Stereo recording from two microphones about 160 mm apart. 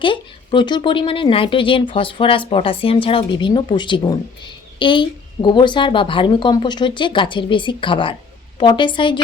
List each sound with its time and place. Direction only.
0.0 s a woman's voice: 30° left (ahead or behind)